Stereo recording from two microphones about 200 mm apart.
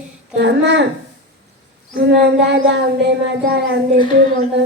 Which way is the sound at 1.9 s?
55° right (ahead or behind).